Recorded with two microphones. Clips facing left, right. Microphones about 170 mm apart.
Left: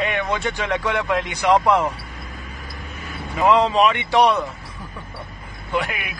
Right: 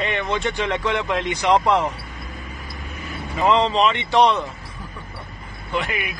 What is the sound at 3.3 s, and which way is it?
Speech, centre (ahead or behind).